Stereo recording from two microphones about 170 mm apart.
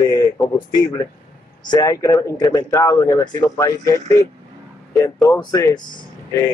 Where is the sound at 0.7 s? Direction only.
25° left (ahead or behind).